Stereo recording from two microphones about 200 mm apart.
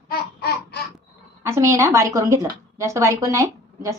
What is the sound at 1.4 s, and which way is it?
A woman's voice, 15° right (ahead or behind).